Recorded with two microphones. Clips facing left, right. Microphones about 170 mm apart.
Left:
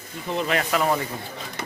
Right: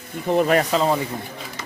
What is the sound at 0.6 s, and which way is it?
Speech, 25° right (ahead or behind).